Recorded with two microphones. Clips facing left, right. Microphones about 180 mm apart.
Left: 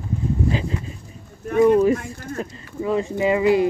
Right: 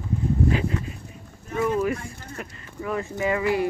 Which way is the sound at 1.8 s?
25° left (ahead or behind).